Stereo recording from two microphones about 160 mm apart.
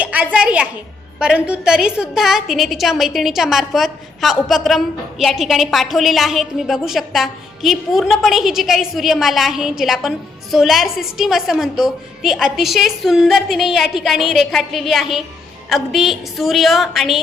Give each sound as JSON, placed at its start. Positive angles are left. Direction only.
{"t": 0.0, "sound": "a woman's voice", "side_deg": -10}